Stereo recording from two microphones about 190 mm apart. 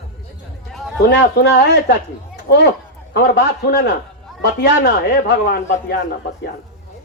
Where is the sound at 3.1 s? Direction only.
60° left (ahead or behind).